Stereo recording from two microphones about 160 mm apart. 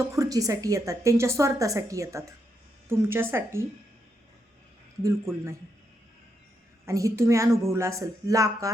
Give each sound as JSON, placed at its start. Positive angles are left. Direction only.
{"t": 0.2, "sound": "a woman's voice", "side_deg": -20}
{"t": 5.0, "sound": "speech", "side_deg": -15}
{"t": 6.8, "sound": "a woman's voice", "side_deg": -20}